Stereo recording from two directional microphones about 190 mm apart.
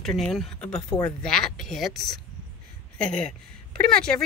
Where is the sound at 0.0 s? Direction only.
Centre (ahead or behind).